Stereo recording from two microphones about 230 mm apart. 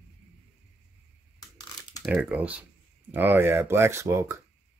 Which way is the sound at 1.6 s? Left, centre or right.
Centre.